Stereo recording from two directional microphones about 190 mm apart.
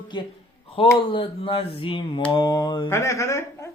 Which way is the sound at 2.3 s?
20° left (ahead or behind).